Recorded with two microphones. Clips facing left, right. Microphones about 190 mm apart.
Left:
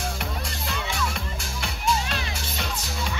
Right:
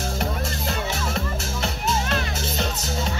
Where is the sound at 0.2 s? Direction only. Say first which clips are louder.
Right 6 dB; 40° right (ahead or behind).